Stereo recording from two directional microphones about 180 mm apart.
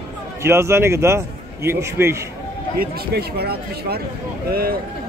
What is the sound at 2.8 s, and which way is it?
Speech, 60° right (ahead or behind).